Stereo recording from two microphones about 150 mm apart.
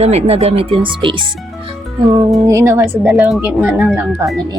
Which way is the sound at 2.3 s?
20° right (ahead or behind).